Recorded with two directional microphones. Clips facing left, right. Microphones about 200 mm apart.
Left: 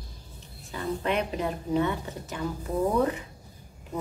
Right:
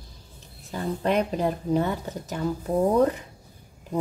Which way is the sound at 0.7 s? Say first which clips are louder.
Right 3 dB; 40° right (ahead or behind).